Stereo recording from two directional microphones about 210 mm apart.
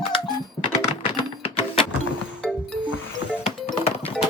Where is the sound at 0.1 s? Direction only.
25° left (ahead or behind).